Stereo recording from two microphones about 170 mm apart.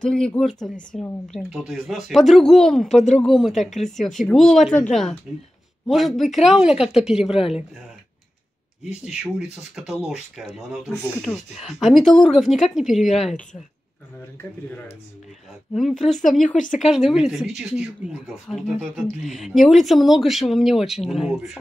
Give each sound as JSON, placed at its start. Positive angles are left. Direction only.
{"t": 0.0, "sound": "speech", "side_deg": 5}
{"t": 2.9, "sound": "speech", "side_deg": 45}
{"t": 3.2, "sound": "speech", "side_deg": 0}
{"t": 5.9, "sound": "speech", "side_deg": 0}
{"t": 9.0, "sound": "speech", "side_deg": -5}
{"t": 15.7, "sound": "speech", "side_deg": 0}
{"t": 16.4, "sound": "speech", "side_deg": 50}
{"t": 16.8, "sound": "speech", "side_deg": -5}